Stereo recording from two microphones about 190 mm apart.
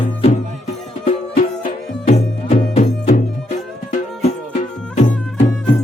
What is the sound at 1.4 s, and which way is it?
Music, 40° left (ahead or behind).